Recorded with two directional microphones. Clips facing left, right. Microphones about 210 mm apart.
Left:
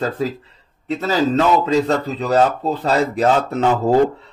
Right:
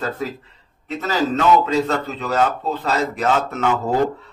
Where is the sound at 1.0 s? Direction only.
35° left (ahead or behind).